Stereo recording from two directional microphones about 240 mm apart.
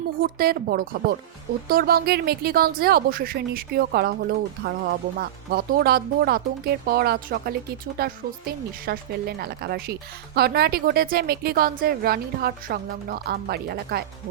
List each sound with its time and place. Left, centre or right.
0.2 s speech: right